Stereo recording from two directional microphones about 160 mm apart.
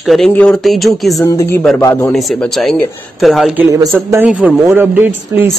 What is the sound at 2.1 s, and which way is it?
Speech, centre (ahead or behind).